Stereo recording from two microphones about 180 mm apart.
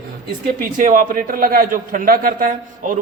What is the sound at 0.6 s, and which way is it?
A man's voice, 50° right (ahead or behind).